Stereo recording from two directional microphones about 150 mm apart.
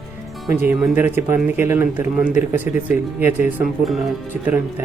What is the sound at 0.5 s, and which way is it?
Speech, 15° right (ahead or behind).